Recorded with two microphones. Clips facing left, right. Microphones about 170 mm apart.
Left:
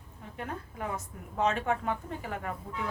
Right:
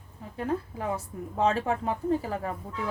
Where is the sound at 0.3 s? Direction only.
30° right (ahead or behind).